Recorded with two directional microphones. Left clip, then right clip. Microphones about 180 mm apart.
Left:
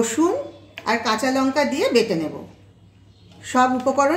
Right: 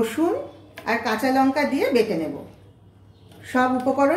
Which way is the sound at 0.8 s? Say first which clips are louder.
Left 2 dB; 55° left (ahead or behind).